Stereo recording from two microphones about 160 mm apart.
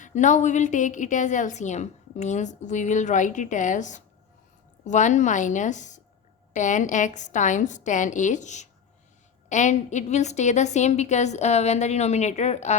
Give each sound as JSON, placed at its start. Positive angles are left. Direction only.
{"t": 0.0, "sound": "a woman's voice", "side_deg": 50}